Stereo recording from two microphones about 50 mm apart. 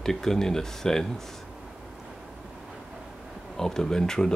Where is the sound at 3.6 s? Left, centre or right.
Centre.